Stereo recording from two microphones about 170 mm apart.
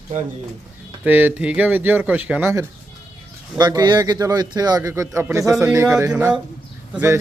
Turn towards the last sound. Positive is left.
turn(degrees=-10)  # may be behind; listen again after turning